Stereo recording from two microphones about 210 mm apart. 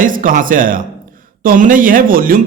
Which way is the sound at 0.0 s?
40° right (ahead or behind).